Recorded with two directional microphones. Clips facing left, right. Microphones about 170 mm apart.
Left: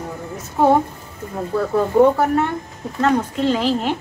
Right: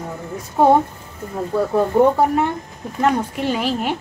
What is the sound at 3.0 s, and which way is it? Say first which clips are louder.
Speech: left 1 dB; 10° right (ahead or behind).